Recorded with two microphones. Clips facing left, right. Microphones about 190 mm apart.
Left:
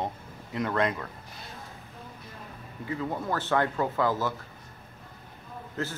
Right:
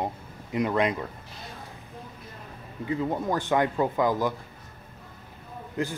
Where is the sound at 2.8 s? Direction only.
20° right (ahead or behind).